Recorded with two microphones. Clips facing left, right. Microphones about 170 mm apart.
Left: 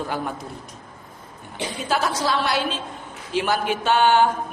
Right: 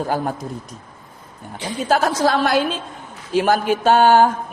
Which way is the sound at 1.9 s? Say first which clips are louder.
Right 6 dB; 45° right (ahead or behind).